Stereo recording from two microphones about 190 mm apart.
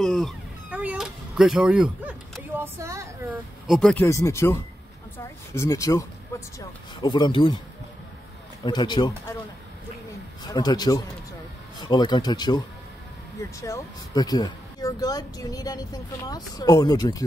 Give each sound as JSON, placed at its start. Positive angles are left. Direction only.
{"t": 0.0, "sound": "cat", "side_deg": 0}
{"t": 3.6, "sound": "speech", "side_deg": 0}
{"t": 5.6, "sound": "speech", "side_deg": 15}
{"t": 6.3, "sound": "vehicle", "side_deg": 15}
{"t": 7.0, "sound": "speech", "side_deg": 25}
{"t": 8.6, "sound": "speech", "side_deg": 25}
{"t": 10.5, "sound": "speech", "side_deg": 20}